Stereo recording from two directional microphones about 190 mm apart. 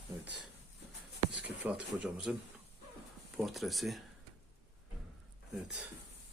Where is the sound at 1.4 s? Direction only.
5° right (ahead or behind).